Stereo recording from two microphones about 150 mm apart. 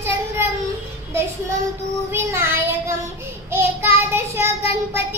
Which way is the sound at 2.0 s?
15° right (ahead or behind).